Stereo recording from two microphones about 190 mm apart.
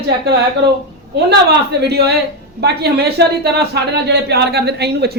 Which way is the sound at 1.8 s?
60° right (ahead or behind).